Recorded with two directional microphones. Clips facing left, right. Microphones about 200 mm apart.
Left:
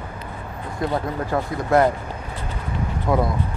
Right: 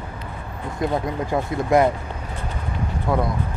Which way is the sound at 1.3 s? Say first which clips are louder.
Right 1 dB; 15° right (ahead or behind).